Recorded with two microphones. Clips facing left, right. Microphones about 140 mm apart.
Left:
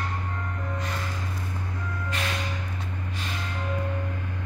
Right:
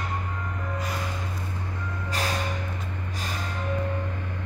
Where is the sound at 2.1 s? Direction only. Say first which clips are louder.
Right 3 dB; 35° right (ahead or behind).